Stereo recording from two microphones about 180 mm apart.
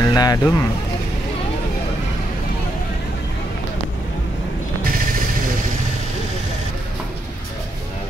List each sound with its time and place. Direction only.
0.0 s speech: 20° left (ahead or behind)